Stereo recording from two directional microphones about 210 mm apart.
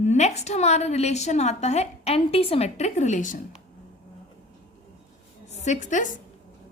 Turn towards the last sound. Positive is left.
turn(degrees=35)  # may be behind; listen again after turning